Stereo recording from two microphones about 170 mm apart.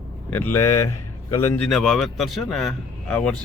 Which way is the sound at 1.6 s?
Centre (ahead or behind).